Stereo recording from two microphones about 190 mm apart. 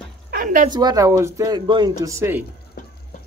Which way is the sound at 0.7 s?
20° right (ahead or behind).